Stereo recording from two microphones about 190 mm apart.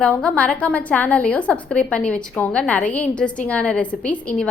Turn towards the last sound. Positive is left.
turn(degrees=5)  # may be behind; listen again after turning